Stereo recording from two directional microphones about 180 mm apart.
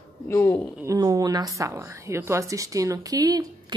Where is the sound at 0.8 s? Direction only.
20° right (ahead or behind).